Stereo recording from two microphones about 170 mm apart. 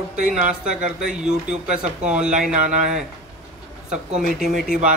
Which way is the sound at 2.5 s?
45° right (ahead or behind).